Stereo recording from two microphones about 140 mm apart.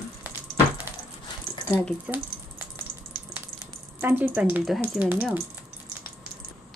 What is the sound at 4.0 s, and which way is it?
Speech, 15° right (ahead or behind).